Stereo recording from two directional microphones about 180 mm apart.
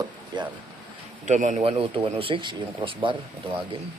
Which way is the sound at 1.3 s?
40° right (ahead or behind).